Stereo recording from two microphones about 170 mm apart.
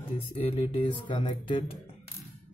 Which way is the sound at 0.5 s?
35° left (ahead or behind).